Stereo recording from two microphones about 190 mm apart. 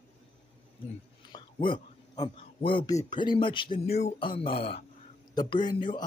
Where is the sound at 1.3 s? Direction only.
20° left (ahead or behind).